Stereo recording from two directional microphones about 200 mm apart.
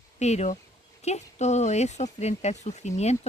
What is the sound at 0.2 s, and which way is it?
Speech, 35° left (ahead or behind).